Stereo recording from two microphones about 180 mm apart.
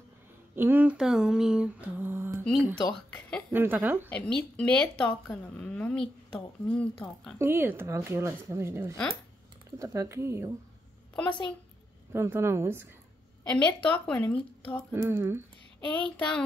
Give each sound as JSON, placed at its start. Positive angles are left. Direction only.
{"t": 0.6, "sound": "mantra", "side_deg": -10}
{"t": 2.7, "sound": "speech", "side_deg": 5}
{"t": 3.5, "sound": "mantra", "side_deg": -10}
{"t": 4.1, "sound": "a woman's voice", "side_deg": 5}
{"t": 7.3, "sound": "mantra", "side_deg": -15}
{"t": 11.2, "sound": "a woman's voice", "side_deg": 25}
{"t": 12.1, "sound": "mantra", "side_deg": -15}
{"t": 13.8, "sound": "speech", "side_deg": 5}
{"t": 14.9, "sound": "mantra", "side_deg": -10}
{"t": 16.2, "sound": "a woman's voice", "side_deg": 5}